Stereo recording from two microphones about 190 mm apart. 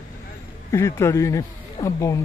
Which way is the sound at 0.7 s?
15° left (ahead or behind).